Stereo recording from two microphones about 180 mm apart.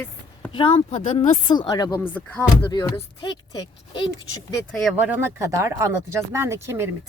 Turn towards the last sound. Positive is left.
turn(degrees=-15)  # may be behind; listen again after turning